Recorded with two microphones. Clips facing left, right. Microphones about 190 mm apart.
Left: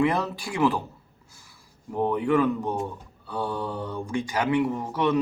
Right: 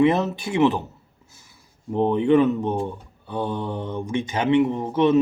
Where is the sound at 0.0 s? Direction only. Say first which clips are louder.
Right 5 dB; 20° right (ahead or behind).